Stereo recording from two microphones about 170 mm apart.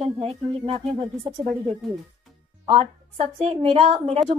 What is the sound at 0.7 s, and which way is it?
A woman's voice, 35° right (ahead or behind).